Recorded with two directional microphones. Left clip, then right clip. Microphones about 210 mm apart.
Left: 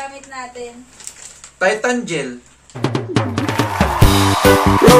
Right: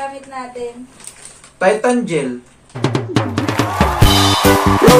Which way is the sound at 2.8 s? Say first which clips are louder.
Right 1 dB; centre (ahead or behind).